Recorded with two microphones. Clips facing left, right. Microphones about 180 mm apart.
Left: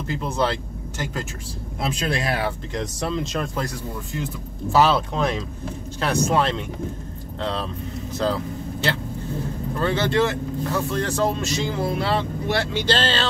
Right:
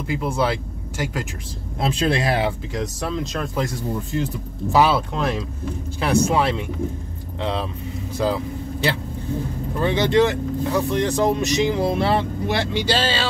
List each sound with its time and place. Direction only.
0.0 s speech: 10° right (ahead or behind)
1.9 s speech: 30° right (ahead or behind)
2.7 s speech: centre (ahead or behind)
4.7 s speech: 10° right (ahead or behind)
9.8 s speech: 15° right (ahead or behind)